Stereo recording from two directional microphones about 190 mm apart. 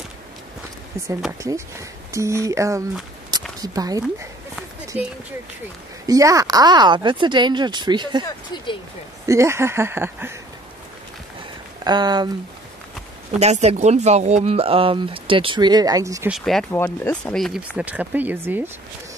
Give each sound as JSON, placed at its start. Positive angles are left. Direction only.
{"t": 1.4, "sound": "speech", "side_deg": -15}
{"t": 3.3, "sound": "a sound", "side_deg": -20}
{"t": 3.6, "sound": "speech", "side_deg": -20}
{"t": 4.9, "sound": "speech", "side_deg": -5}
{"t": 11.8, "sound": "speech", "side_deg": -20}
{"t": 13.4, "sound": "speech", "side_deg": -35}
{"t": 16.3, "sound": "speech", "side_deg": 0}